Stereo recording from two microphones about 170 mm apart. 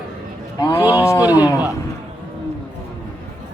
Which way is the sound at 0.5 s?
20° left (ahead or behind).